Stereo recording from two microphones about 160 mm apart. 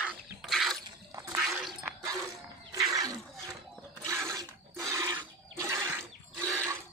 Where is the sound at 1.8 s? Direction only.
20° right (ahead or behind).